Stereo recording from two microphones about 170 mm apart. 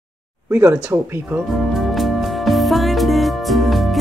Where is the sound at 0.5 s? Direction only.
15° right (ahead or behind).